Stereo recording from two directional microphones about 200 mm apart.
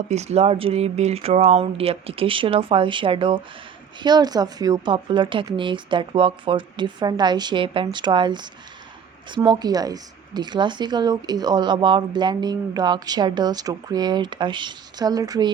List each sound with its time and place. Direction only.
0.1 s speech: 35° right (ahead or behind)